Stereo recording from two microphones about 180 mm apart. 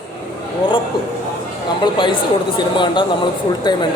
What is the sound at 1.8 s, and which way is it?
Speech, 25° left (ahead or behind).